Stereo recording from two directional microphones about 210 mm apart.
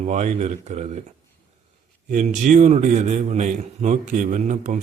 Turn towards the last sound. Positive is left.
turn(degrees=-35)  # may be behind; listen again after turning